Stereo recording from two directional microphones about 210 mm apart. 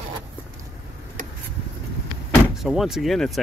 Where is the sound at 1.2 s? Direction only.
40° right (ahead or behind).